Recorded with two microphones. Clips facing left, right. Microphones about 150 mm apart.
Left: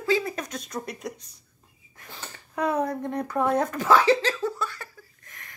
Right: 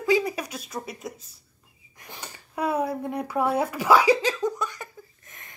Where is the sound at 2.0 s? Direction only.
15° right (ahead or behind).